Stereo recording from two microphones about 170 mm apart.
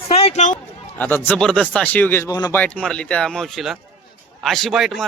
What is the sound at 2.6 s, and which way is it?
A man's voice, 5° left (ahead or behind).